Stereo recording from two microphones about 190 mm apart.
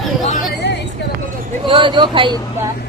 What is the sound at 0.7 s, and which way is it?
Vehicle, 65° left (ahead or behind).